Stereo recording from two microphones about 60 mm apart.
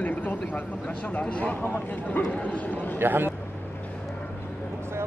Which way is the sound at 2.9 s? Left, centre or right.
Right.